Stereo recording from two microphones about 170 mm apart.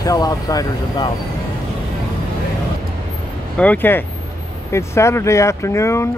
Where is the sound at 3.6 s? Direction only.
10° left (ahead or behind).